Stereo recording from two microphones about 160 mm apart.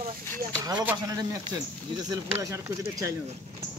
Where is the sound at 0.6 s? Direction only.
25° right (ahead or behind).